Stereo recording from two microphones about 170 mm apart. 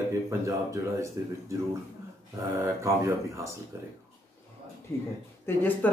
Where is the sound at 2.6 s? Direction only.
15° right (ahead or behind).